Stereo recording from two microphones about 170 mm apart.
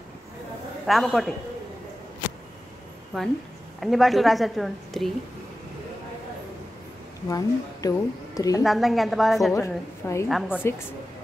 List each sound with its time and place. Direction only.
0.8 s a woman's voice: centre (ahead or behind)
3.8 s a woman's voice: centre (ahead or behind)
7.2 s speech: 20° left (ahead or behind)
8.6 s a woman's voice: centre (ahead or behind)
9.5 s a woman's voice: 15° left (ahead or behind)
10.2 s a woman's voice: centre (ahead or behind)